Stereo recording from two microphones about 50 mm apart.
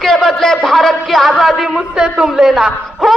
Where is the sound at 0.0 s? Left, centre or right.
Centre.